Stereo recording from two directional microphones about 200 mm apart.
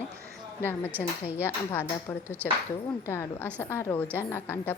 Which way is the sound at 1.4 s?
10° left (ahead or behind).